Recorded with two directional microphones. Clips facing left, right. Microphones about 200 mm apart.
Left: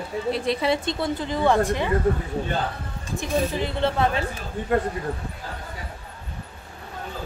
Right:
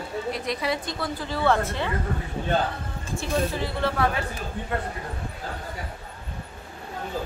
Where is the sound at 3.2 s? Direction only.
20° left (ahead or behind).